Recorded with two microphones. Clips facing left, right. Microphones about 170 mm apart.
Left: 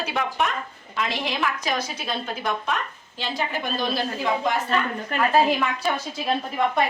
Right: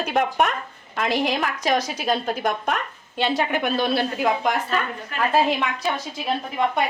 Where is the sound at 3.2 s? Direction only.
65° right (ahead or behind).